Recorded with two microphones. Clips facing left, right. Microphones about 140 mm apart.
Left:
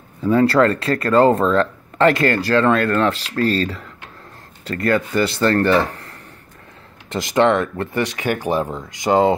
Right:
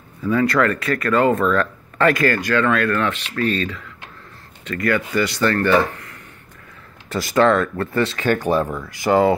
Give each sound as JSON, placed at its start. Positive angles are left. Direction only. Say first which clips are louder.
{"t": 0.2, "sound": "speech", "louder": "left 3 dB", "side_deg": 30}
{"t": 7.1, "sound": "speech", "louder": "even", "side_deg": 20}